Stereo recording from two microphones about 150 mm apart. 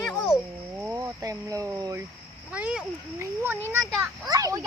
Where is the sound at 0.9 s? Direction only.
20° right (ahead or behind).